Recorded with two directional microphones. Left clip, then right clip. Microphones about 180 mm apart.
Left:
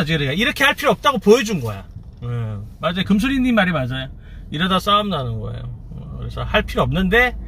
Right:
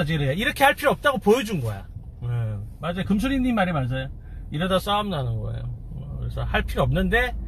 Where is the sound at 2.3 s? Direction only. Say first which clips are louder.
Left 4 dB; 20° left (ahead or behind).